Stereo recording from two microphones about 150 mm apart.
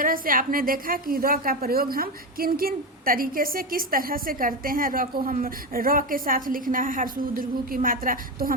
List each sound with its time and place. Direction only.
0.0 s a woman's voice: 65° right (ahead or behind)